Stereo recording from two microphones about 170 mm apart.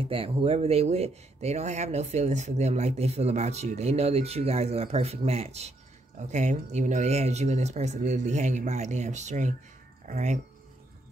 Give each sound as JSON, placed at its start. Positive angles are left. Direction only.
{"t": 0.0, "sound": "speech", "side_deg": -35}